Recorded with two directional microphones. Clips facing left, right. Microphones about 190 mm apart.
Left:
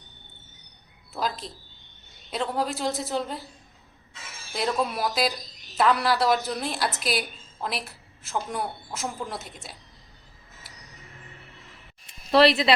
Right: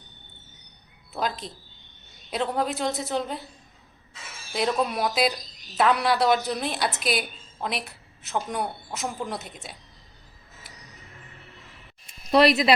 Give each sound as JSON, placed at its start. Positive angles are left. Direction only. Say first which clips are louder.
{"t": 1.1, "sound": "a woman's voice", "louder": "right 1 dB", "side_deg": 0}
{"t": 4.5, "sound": "a woman's voice", "louder": "right 2 dB", "side_deg": 0}
{"t": 12.4, "sound": "speech", "louder": "even", "side_deg": 25}